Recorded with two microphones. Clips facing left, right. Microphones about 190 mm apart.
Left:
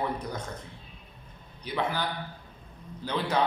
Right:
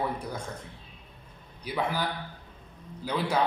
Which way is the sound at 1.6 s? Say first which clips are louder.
Even; 5° right (ahead or behind).